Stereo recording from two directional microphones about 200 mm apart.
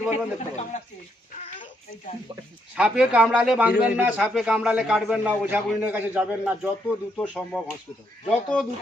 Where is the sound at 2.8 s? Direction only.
5° right (ahead or behind).